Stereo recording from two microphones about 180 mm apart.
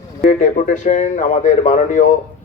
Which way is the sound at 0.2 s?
40° left (ahead or behind).